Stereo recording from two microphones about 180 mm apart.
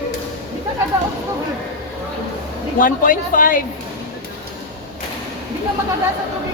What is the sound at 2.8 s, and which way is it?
Speech, 50° left (ahead or behind).